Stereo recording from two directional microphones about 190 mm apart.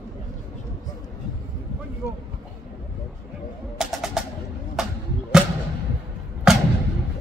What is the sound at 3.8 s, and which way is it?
Music, centre (ahead or behind).